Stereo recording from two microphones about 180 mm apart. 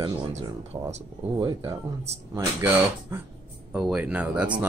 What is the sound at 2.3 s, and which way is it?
Speech, 15° right (ahead or behind).